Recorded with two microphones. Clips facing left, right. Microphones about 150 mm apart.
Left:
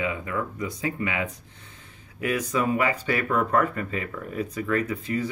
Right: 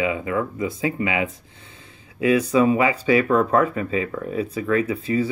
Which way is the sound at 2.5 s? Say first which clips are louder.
Right 6 dB; 90° right.